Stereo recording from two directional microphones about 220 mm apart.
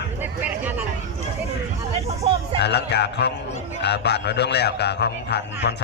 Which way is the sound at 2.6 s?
50° left (ahead or behind).